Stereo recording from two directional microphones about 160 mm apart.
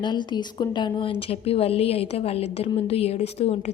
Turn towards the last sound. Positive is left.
turn(degrees=40)  # may be behind; listen again after turning